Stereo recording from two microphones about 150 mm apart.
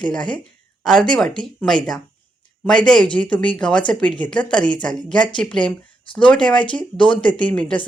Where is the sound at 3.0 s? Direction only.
10° left (ahead or behind).